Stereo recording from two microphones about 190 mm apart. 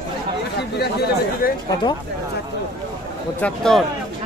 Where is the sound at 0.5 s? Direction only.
55° left (ahead or behind).